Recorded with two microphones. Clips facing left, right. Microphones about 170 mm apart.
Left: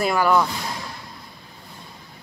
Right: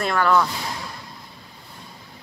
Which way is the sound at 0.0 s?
5° left (ahead or behind).